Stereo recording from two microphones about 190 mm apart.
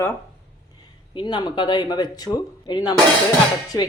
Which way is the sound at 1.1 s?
25° left (ahead or behind).